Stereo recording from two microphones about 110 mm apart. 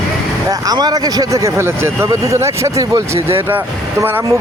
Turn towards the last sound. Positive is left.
turn(degrees=-20)  # may be behind; listen again after turning